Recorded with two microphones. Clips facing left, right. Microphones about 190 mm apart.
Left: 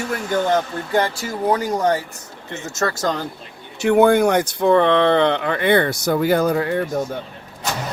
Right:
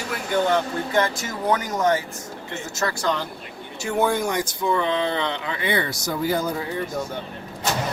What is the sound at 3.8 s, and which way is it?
Speech, 60° left (ahead or behind).